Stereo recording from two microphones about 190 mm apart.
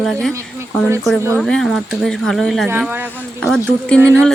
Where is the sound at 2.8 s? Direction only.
10° right (ahead or behind).